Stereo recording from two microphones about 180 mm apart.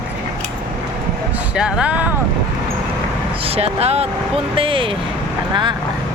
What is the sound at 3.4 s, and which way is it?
Speech, 35° right (ahead or behind).